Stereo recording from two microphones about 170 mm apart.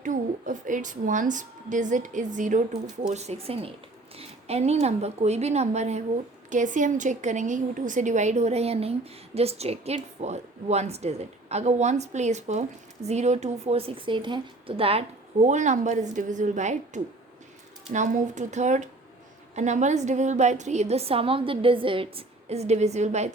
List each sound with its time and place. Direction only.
0.0 s a woman's voice: 50° right (ahead or behind)